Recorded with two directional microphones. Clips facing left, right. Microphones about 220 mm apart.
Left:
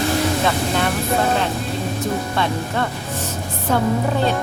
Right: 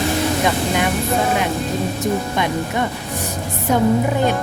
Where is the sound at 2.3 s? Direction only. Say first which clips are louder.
Right 1 dB; 15° right (ahead or behind).